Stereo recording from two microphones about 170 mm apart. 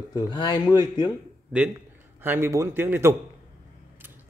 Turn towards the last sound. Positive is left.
turn(degrees=-15)  # may be behind; listen again after turning